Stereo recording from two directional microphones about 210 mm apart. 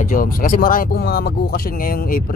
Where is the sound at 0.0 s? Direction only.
40° left (ahead or behind).